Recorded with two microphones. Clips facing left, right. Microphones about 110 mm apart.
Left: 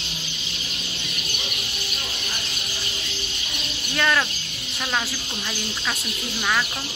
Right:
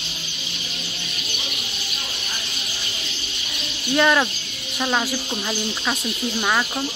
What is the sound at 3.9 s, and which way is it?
Speech, 20° right (ahead or behind).